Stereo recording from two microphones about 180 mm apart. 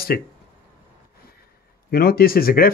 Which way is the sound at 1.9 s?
55° left (ahead or behind).